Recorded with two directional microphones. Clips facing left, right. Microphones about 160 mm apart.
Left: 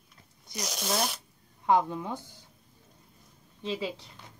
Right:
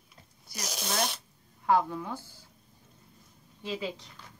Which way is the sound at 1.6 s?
20° left (ahead or behind).